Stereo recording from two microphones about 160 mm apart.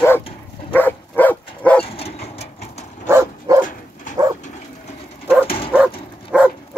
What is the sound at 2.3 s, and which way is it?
Sewing machine, 40° left (ahead or behind).